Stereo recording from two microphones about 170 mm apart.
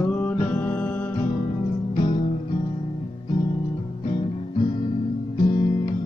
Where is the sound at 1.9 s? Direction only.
25° left (ahead or behind).